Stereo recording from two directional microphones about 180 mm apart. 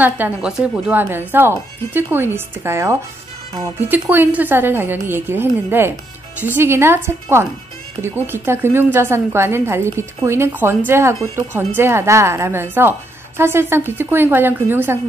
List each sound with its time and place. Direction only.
0.0 s a woman's voice: 5° right (ahead or behind)